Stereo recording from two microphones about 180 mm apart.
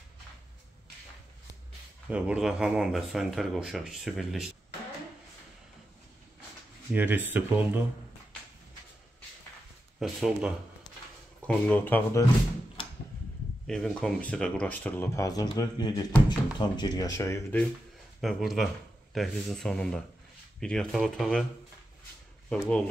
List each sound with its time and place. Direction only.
2.0 s speech: 5° right (ahead or behind)
6.9 s speech: 10° right (ahead or behind)
9.9 s speech: centre (ahead or behind)
11.4 s speech: 10° left (ahead or behind)
13.7 s speech: 5° left (ahead or behind)
18.2 s speech: centre (ahead or behind)
22.5 s speech: 5° left (ahead or behind)